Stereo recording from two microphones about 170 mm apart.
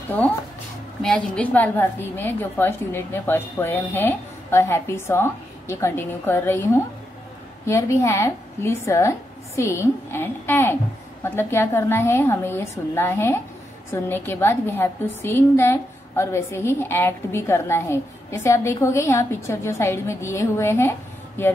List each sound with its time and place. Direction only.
1.0 s a woman's voice: 5° left (ahead or behind)
7.6 s a woman's voice: 15° left (ahead or behind)